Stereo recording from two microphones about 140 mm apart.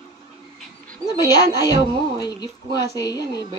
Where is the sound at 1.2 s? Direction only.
30° left (ahead or behind).